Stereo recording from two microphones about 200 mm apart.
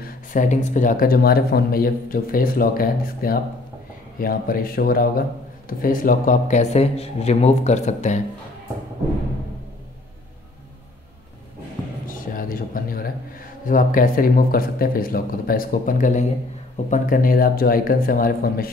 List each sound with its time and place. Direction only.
0.0 s a man's voice: 40° left (ahead or behind)
12.1 s a sound: 45° left (ahead or behind)
13.7 s speech: 45° left (ahead or behind)